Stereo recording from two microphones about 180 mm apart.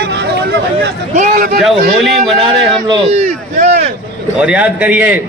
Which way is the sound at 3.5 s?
50° right (ahead or behind).